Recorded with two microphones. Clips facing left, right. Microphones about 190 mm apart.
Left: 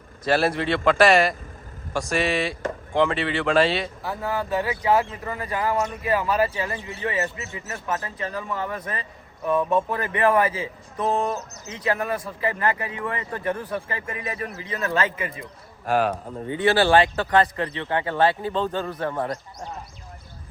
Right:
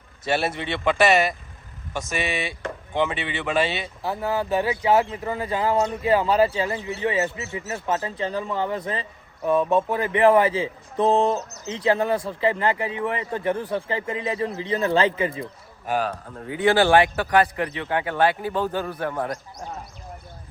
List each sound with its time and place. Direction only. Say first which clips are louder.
0.3 s a man's voice: left 3 dB; centre (ahead or behind)
4.0 s speech: right 2 dB; 25° right (ahead or behind)
15.9 s a man's voice: left 3 dB; 5° left (ahead or behind)
16.5 s a man's voice: right 1 dB; 15° right (ahead or behind)